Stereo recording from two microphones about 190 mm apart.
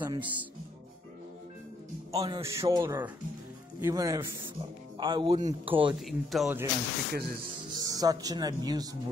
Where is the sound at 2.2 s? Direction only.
15° right (ahead or behind).